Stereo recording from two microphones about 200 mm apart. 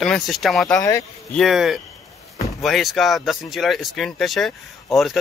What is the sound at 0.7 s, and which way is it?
Speech, 15° left (ahead or behind).